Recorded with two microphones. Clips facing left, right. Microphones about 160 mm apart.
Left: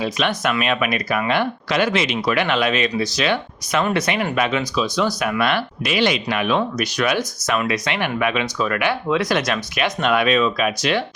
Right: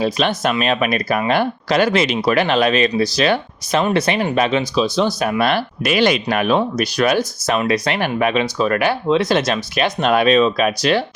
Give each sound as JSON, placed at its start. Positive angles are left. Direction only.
{"t": 0.0, "sound": "speech", "side_deg": -30}